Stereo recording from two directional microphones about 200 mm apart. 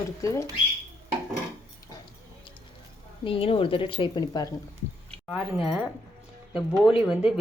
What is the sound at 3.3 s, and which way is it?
Speech, 25° left (ahead or behind).